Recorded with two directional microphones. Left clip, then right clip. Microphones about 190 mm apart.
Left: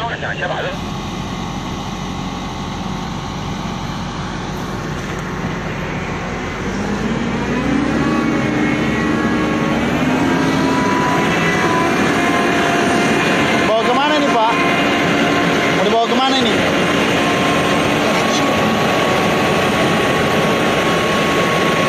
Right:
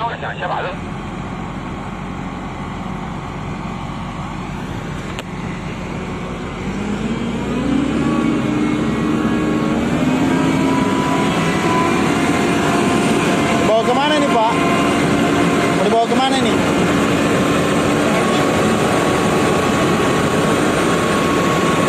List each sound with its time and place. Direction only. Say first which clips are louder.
8.6 s vehicle: left 2 dB; 55° right (ahead or behind)
10.3 s vehicle: left 1 dB; 40° right (ahead or behind); by 13.7 s 55° right (ahead or behind)
13.7 s vehicle: even; 10° right (ahead or behind)
14.6 s vehicle: left 1 dB; 60° right (ahead or behind)
15.8 s speech: right 1 dB; 10° right (ahead or behind)
16.5 s vehicle: left 1 dB; 60° right (ahead or behind)